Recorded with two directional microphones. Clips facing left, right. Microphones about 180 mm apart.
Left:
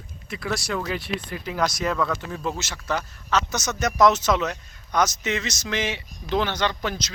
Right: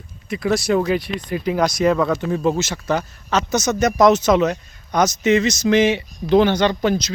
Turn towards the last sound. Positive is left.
turn(degrees=-10)  # may be behind; listen again after turning